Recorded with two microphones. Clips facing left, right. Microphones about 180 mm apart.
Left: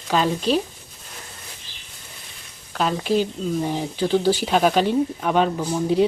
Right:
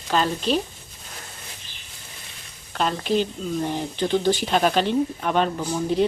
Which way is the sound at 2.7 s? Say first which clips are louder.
Left 2 dB; 5° left (ahead or behind).